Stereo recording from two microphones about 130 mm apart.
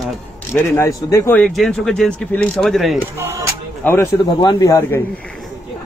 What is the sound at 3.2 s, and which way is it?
Speech, 20° right (ahead or behind).